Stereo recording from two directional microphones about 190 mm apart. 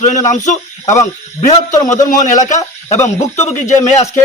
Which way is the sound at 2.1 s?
40° left (ahead or behind).